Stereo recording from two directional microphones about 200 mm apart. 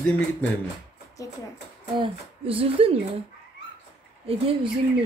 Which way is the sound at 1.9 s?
25° right (ahead or behind).